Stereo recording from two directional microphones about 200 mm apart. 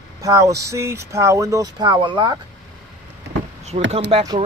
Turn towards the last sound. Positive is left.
turn(degrees=-30)  # may be behind; listen again after turning